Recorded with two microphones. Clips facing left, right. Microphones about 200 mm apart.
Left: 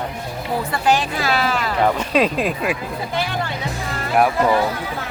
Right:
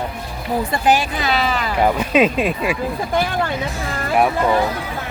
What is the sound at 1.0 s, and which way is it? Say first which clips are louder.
Speech: even; centre (ahead or behind).